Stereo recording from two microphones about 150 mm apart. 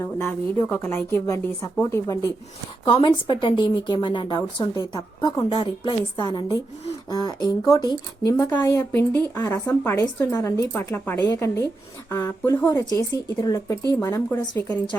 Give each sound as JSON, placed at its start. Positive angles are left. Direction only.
{"t": 0.0, "sound": "speech", "side_deg": 15}
{"t": 2.8, "sound": "speech", "side_deg": 35}